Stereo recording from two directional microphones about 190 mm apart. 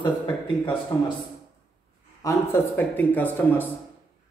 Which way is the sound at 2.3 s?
10° left (ahead or behind).